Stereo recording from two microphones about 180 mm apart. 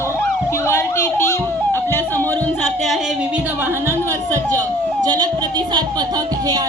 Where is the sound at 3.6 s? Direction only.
15° right (ahead or behind).